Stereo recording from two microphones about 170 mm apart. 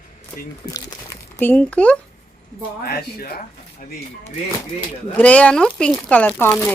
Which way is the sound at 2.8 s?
60° left (ahead or behind).